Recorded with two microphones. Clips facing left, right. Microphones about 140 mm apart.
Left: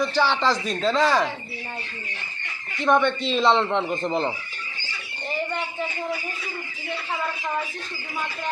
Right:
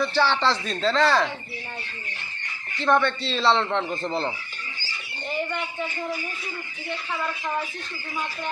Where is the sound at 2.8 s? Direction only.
15° left (ahead or behind).